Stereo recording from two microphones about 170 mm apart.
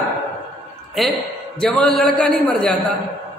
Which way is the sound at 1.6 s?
Centre (ahead or behind).